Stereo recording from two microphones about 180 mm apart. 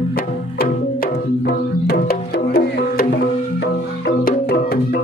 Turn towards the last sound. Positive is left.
turn(degrees=60)  # may be behind; listen again after turning